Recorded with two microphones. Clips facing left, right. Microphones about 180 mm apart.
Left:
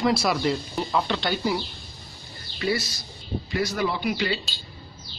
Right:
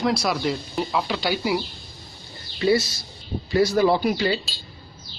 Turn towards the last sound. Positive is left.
turn(degrees=-35)  # may be behind; listen again after turning